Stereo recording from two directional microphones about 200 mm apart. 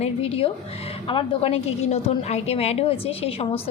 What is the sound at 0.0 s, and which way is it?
A woman's voice, 30° left (ahead or behind).